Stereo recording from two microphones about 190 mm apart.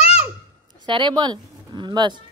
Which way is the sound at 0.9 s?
25° right (ahead or behind).